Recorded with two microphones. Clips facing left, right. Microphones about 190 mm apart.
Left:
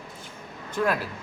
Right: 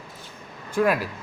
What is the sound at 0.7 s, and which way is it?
Speech, 10° right (ahead or behind).